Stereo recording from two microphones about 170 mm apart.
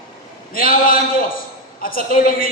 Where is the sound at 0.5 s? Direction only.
55° left (ahead or behind).